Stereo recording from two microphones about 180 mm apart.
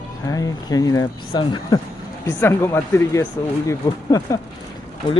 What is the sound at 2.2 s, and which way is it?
Speech, 15° left (ahead or behind).